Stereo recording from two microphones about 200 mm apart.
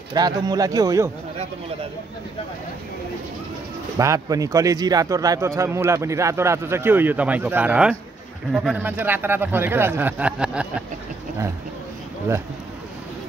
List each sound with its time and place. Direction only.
0.1 s a man's voice: 20° right (ahead or behind)
4.0 s a man's voice: 15° right (ahead or behind)